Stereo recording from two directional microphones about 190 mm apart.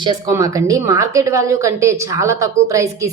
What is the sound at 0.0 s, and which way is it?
Speech, 20° right (ahead or behind).